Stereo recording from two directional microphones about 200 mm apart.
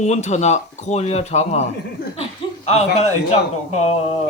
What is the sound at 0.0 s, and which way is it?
Speech, 35° left (ahead or behind).